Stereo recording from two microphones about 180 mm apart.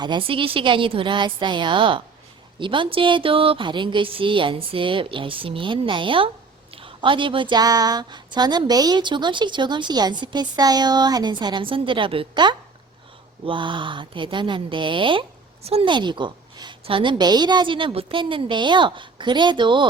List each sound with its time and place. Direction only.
0.0 s a woman's voice: 25° right (ahead or behind)